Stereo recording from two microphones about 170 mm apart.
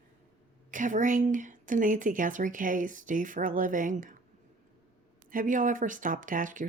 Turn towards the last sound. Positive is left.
turn(degrees=-50)  # may be behind; listen again after turning